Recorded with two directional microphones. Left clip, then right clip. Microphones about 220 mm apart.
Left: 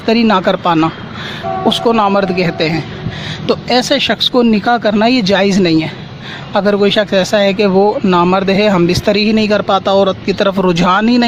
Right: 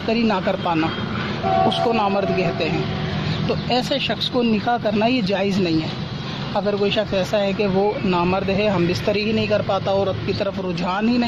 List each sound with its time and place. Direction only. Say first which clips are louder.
0.1 s speech: left 9 dB; 35° left (ahead or behind)